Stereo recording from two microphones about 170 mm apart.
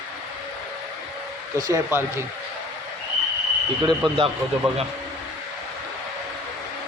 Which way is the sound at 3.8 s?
25° right (ahead or behind).